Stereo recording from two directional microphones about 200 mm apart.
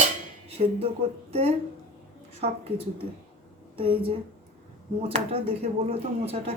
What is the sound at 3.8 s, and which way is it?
Speech, 25° right (ahead or behind).